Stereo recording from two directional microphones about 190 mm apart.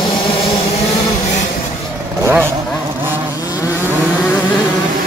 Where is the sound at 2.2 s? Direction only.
10° right (ahead or behind).